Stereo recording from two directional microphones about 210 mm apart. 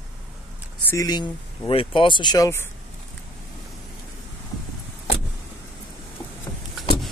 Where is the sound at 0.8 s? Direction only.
15° left (ahead or behind).